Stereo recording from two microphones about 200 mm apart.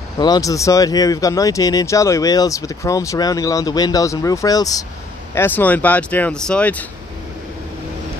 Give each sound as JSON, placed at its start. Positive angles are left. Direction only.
{"t": 0.2, "sound": "speech", "side_deg": 20}